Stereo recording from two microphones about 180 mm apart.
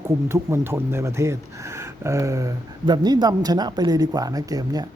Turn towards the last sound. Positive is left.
turn(degrees=-20)  # may be behind; listen again after turning